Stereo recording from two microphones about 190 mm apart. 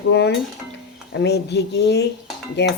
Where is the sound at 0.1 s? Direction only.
60° left (ahead or behind).